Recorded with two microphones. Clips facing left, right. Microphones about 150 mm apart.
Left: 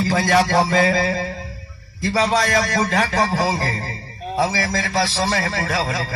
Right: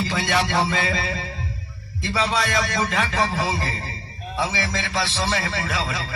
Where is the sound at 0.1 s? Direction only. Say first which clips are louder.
Left 9 dB; 40° left (ahead or behind).